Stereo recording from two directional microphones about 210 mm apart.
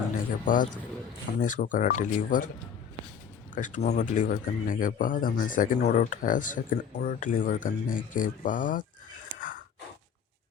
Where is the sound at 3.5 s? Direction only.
35° left (ahead or behind).